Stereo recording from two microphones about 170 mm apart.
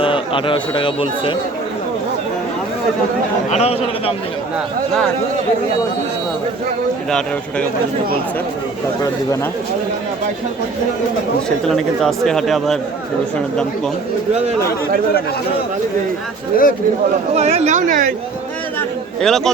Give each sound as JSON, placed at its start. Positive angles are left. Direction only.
{"t": 0.0, "sound": "a man's voice", "side_deg": 30}
{"t": 3.5, "sound": "a man's voice", "side_deg": 35}
{"t": 11.4, "sound": "speech", "side_deg": 0}
{"t": 16.5, "sound": "speech", "side_deg": 60}
{"t": 17.3, "sound": "speech", "side_deg": -40}
{"t": 18.8, "sound": "chatter", "side_deg": 0}